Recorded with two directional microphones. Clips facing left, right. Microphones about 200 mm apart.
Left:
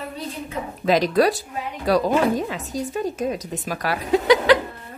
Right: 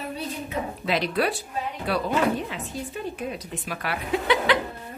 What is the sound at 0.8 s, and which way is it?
A woman's voice, 40° left (ahead or behind).